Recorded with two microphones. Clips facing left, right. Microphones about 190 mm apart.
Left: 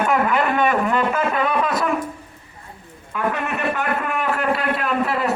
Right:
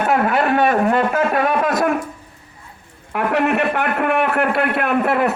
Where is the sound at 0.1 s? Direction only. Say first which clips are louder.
Right 2 dB; 60° right (ahead or behind).